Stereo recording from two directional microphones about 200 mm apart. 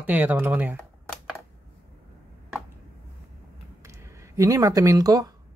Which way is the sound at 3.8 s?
15° right (ahead or behind).